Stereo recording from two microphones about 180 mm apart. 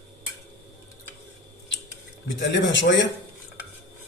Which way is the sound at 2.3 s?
85° left.